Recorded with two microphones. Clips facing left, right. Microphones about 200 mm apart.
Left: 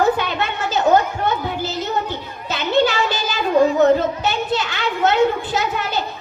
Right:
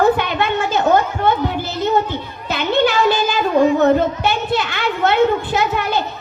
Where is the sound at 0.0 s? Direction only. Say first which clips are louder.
Right 3 dB; 55° right (ahead or behind).